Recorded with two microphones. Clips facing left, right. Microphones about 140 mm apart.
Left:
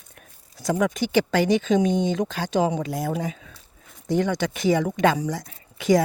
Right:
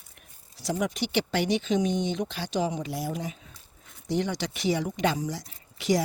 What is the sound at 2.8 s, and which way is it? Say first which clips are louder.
Speech: left 5 dB; 75° left (ahead or behind).